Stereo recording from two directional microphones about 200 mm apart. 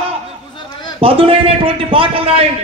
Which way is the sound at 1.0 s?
30° right (ahead or behind).